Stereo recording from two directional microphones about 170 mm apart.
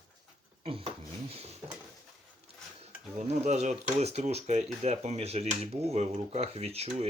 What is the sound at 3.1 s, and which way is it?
Speech, 40° right (ahead or behind).